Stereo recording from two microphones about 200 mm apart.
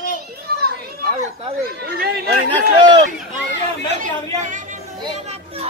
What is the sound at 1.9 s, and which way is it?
Speech, 50° right (ahead or behind).